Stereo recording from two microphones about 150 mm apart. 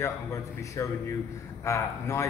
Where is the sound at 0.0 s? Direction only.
20° left (ahead or behind).